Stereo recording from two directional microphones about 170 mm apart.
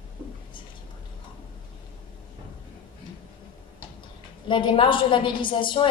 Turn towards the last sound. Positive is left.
turn(degrees=30)  # may be behind; listen again after turning